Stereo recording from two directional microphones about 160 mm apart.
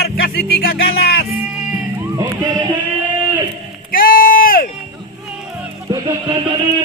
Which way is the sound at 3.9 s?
65° left (ahead or behind).